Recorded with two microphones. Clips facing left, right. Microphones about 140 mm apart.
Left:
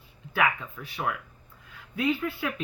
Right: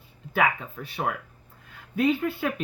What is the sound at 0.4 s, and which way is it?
Speech, 55° right (ahead or behind).